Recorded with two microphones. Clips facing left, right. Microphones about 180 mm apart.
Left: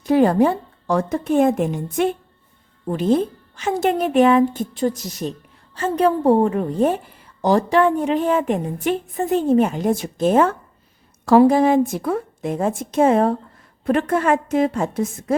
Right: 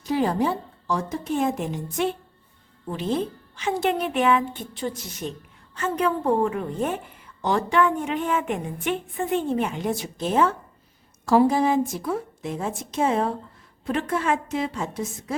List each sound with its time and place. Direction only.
0.0 s a woman's voice: 55° left (ahead or behind)
11.3 s a woman's voice: 60° left (ahead or behind)